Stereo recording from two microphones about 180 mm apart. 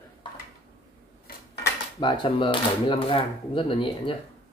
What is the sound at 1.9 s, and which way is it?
Speech, 25° left (ahead or behind).